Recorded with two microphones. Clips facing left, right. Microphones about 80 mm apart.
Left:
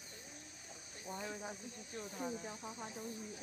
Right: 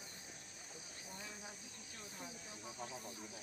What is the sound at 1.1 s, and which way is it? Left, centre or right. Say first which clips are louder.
Cricket: left 9 dB; left.